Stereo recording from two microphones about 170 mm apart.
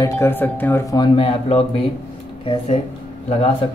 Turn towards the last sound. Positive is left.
turn(degrees=40)  # may be behind; listen again after turning